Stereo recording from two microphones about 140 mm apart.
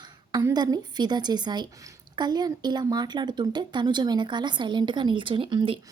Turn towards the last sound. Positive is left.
turn(degrees=-35)  # may be behind; listen again after turning